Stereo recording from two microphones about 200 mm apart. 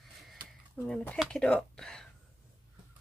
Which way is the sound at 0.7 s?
5° left (ahead or behind).